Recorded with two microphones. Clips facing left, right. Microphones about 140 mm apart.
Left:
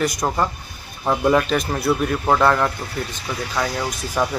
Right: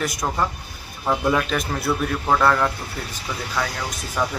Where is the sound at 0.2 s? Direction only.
10° left (ahead or behind).